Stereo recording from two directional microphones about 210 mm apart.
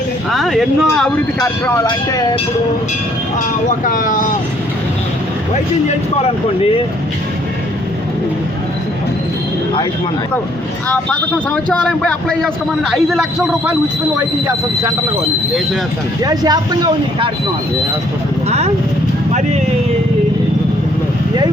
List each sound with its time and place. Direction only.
0.3 s speech: centre (ahead or behind)
1.4 s speech: 15° left (ahead or behind)
3.7 s speech: 40° left (ahead or behind)
10.8 s speech: 5° left (ahead or behind); by 15.2 s 10° right (ahead or behind)
16.2 s speech: 20° right (ahead or behind)
18.4 s speech: 30° right (ahead or behind)